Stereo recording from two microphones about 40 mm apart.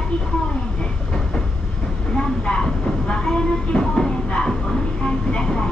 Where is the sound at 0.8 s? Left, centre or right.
Centre.